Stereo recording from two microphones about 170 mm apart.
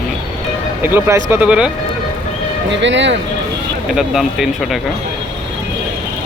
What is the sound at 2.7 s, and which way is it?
Speech, 90° right.